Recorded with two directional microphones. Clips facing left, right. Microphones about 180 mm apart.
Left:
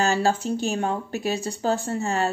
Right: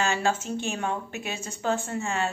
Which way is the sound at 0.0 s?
35° left (ahead or behind).